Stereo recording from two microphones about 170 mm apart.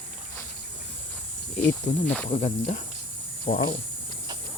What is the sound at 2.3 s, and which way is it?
Speech, 35° left (ahead or behind).